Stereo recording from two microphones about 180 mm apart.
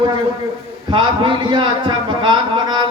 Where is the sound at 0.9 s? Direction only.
25° right (ahead or behind).